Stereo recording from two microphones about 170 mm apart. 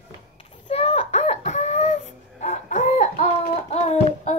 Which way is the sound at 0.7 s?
35° left (ahead or behind).